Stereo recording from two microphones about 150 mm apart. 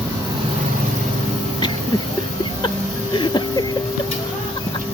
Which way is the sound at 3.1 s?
30° left (ahead or behind).